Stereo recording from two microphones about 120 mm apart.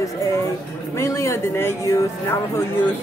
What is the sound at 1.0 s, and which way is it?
Speech, 25° left (ahead or behind).